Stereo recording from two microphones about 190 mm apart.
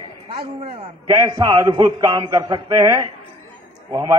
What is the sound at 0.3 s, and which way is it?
A man's voice, 30° right (ahead or behind).